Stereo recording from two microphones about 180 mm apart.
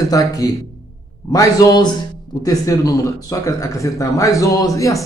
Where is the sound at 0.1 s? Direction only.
20° left (ahead or behind).